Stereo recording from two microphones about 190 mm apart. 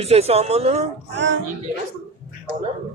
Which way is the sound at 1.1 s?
70° right (ahead or behind).